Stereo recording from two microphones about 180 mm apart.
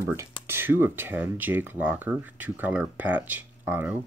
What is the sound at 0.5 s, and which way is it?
Speech, 10° right (ahead or behind).